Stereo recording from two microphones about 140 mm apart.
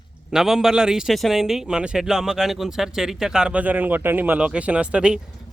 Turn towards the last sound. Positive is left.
turn(degrees=-5)  # may be behind; listen again after turning